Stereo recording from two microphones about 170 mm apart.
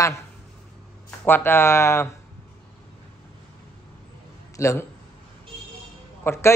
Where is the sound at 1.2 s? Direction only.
15° left (ahead or behind).